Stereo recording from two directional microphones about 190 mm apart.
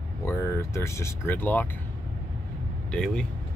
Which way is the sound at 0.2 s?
15° left (ahead or behind).